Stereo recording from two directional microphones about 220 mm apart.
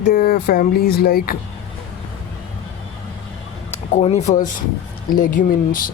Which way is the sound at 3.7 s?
30° left (ahead or behind).